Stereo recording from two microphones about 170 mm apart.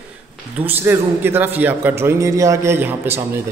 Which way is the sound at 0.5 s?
10° right (ahead or behind).